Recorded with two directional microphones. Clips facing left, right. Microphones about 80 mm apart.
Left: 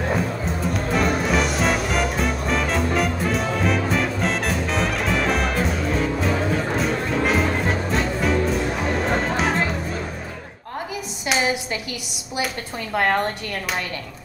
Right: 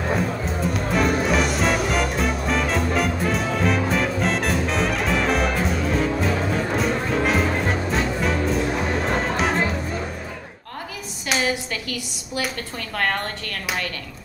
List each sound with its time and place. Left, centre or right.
0.5 s music: centre
11.3 s a sound: centre
12.9 s a woman's voice: centre